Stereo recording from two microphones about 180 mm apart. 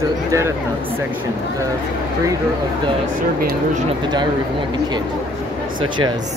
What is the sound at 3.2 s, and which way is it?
Speech, 55° right (ahead or behind).